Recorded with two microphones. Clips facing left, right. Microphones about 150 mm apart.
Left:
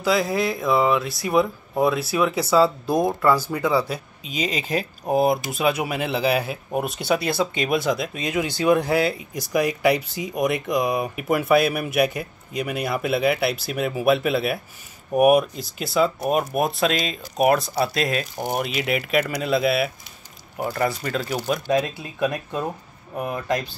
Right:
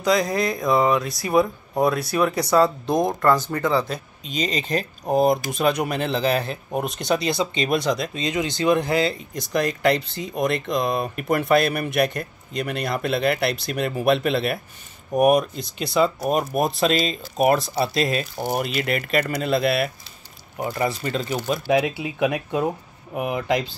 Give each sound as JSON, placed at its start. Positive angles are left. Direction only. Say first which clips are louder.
{"t": 0.0, "sound": "speech", "louder": "right 1 dB", "side_deg": 5}
{"t": 22.0, "sound": "speech", "louder": "right 2 dB", "side_deg": -10}